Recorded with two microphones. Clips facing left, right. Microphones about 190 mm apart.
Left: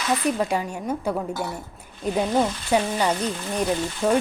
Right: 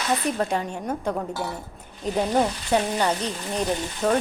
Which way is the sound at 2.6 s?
10° left (ahead or behind).